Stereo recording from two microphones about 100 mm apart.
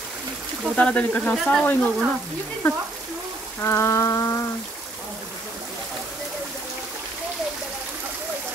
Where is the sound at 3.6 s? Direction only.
25° left (ahead or behind).